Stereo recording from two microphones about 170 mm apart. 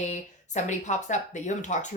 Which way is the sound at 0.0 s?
45° left (ahead or behind).